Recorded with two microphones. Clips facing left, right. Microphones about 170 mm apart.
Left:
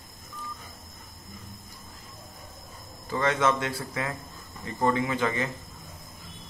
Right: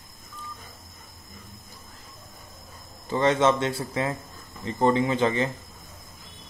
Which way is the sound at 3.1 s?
25° right (ahead or behind).